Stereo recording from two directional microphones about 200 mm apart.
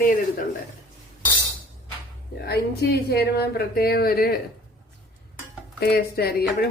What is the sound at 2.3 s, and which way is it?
Speech, 55° left (ahead or behind).